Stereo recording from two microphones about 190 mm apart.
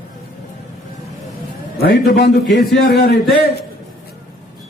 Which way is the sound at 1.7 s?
55° left (ahead or behind).